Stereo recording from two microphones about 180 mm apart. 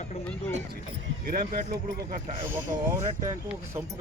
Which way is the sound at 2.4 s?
15° right (ahead or behind).